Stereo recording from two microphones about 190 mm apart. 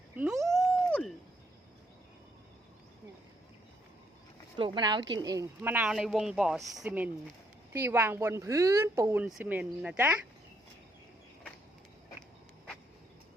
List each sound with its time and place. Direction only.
0.2 s cat: centre (ahead or behind)
4.5 s speech: 25° right (ahead or behind); by 10.2 s 5° right (ahead or behind)